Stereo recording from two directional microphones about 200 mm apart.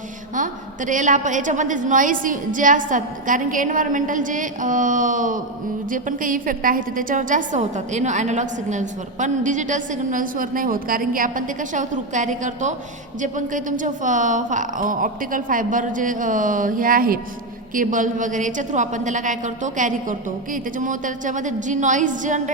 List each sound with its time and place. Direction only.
0.3 s a woman's voice: 40° right (ahead or behind)